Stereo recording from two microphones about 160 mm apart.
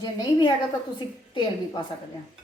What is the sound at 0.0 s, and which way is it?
A woman's voice, 25° left (ahead or behind).